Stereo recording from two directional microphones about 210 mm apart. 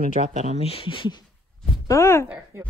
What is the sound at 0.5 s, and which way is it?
Speech, 25° left (ahead or behind).